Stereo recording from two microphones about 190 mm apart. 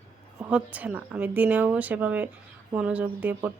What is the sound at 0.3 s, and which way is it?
Speech, 5° right (ahead or behind).